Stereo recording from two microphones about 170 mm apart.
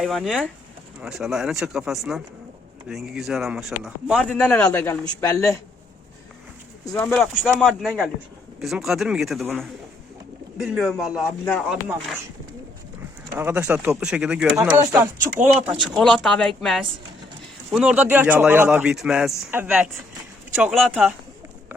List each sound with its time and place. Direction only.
0.0 s speech: centre (ahead or behind); by 5.5 s 20° left (ahead or behind)
6.9 s speech: 10° left (ahead or behind)
10.6 s speech: centre (ahead or behind)
13.3 s speech: 10° right (ahead or behind)
14.8 s speech: 15° right (ahead or behind)
15.8 s speech: centre (ahead or behind)